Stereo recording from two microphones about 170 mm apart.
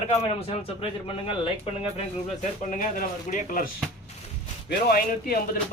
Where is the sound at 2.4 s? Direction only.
50° left (ahead or behind).